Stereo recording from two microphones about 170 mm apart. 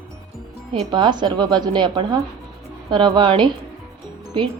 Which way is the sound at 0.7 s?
25° right (ahead or behind).